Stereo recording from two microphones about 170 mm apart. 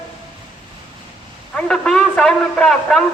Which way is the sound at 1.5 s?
5° left (ahead or behind).